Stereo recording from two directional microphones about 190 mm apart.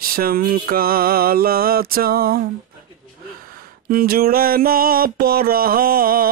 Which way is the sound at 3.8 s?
50° right (ahead or behind).